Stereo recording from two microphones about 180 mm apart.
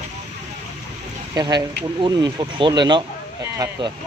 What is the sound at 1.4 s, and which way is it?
Speech, 25° right (ahead or behind).